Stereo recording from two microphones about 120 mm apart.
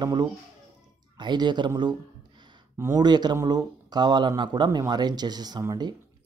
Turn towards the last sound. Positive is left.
turn(degrees=-35)  # may be behind; listen again after turning